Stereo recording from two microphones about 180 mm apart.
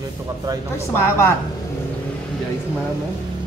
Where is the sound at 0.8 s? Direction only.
15° left (ahead or behind).